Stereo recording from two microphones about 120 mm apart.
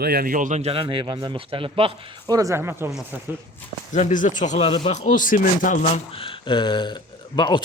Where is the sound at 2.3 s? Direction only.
30° right (ahead or behind).